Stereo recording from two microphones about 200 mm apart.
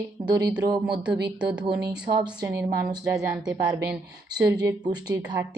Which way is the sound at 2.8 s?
15° right (ahead or behind).